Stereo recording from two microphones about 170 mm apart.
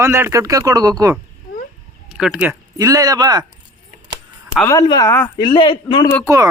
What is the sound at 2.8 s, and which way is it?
Speech, 20° right (ahead or behind).